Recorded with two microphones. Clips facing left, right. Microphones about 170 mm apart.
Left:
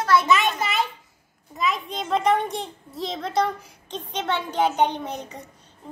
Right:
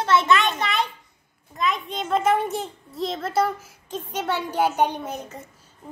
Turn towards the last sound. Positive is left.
turn(degrees=-5)  # may be behind; listen again after turning